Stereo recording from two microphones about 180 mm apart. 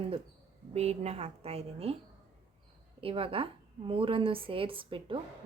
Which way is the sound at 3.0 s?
30° right (ahead or behind).